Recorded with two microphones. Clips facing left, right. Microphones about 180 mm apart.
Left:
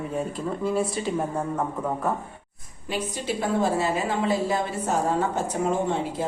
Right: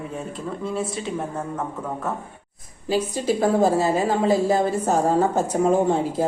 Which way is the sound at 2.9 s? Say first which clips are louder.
Right 7 dB; 40° right (ahead or behind).